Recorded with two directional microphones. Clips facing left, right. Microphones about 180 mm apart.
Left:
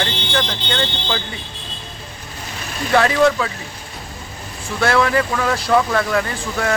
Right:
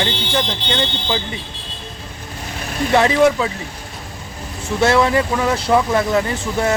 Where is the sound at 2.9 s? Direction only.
20° right (ahead or behind).